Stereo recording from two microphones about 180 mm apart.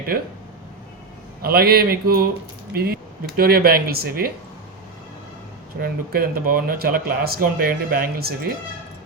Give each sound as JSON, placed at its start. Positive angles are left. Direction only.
{"t": 0.1, "sound": "speech", "side_deg": -60}
{"t": 1.4, "sound": "speech", "side_deg": -60}
{"t": 5.8, "sound": "speech", "side_deg": -55}